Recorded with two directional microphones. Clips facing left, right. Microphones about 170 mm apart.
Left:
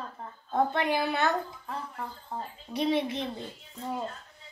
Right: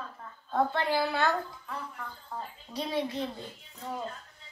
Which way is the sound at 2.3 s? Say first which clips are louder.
Left 2 dB; 25° left (ahead or behind).